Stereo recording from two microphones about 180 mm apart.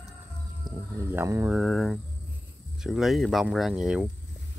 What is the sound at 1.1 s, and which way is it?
Speech, 15° right (ahead or behind).